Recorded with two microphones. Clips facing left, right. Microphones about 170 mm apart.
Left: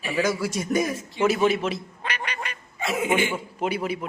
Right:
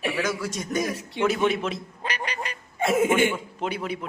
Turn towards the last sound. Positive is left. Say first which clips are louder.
# left 3 dB
turn(degrees=5)  # may be behind; listen again after turning